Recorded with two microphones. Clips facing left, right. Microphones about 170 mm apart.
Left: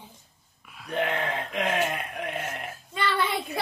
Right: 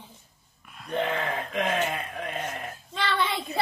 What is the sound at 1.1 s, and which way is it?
A child's voice, 15° left (ahead or behind).